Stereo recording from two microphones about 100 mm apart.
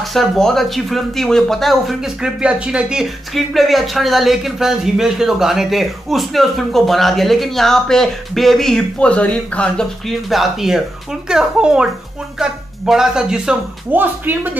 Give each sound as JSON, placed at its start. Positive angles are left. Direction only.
{"t": 0.1, "sound": "speech", "side_deg": 5}
{"t": 13.9, "sound": "speech", "side_deg": -20}